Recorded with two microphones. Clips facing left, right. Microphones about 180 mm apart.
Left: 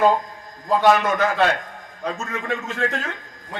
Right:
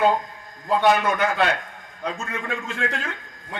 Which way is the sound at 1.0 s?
35° left (ahead or behind).